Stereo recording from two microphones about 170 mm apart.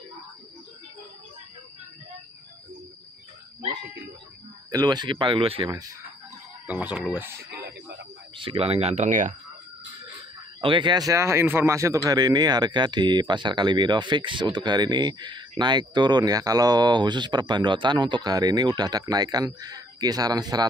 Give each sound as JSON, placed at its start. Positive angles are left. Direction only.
{"t": 4.6, "sound": "speech", "side_deg": -25}
{"t": 6.7, "sound": "speech", "side_deg": -5}
{"t": 7.5, "sound": "a sound", "side_deg": -70}
{"t": 8.4, "sound": "speech", "side_deg": -35}
{"t": 10.6, "sound": "speech", "side_deg": -30}